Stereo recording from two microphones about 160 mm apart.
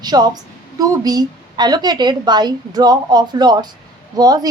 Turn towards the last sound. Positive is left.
turn(degrees=-25)  # may be behind; listen again after turning